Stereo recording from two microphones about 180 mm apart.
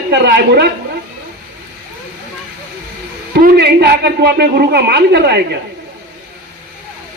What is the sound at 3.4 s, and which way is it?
A woman's voice, 65° right (ahead or behind).